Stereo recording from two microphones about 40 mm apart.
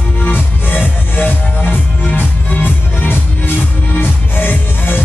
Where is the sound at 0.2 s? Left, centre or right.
Left.